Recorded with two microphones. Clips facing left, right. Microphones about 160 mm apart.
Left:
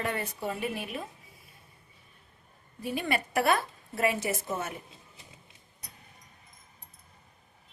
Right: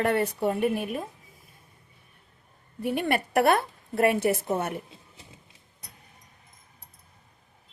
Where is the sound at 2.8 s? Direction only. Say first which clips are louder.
Right 5 dB; 60° right (ahead or behind).